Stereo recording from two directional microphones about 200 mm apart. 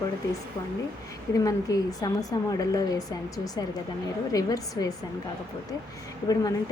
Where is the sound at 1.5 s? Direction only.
15° left (ahead or behind).